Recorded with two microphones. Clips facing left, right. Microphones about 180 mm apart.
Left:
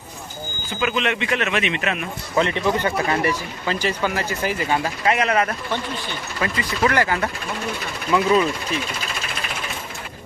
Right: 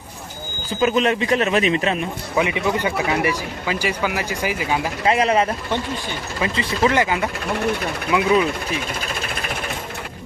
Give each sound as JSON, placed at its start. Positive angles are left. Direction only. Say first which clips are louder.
{"t": 0.7, "sound": "speech", "louder": "right 5 dB", "side_deg": -35}
{"t": 2.3, "sound": "speech", "louder": "left 1 dB", "side_deg": -10}
{"t": 5.0, "sound": "speech", "louder": "right 3 dB", "side_deg": -30}